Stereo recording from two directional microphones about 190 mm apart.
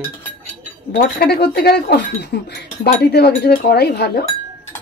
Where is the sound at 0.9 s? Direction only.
55° left (ahead or behind).